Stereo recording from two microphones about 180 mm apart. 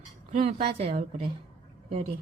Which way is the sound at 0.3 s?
35° right (ahead or behind).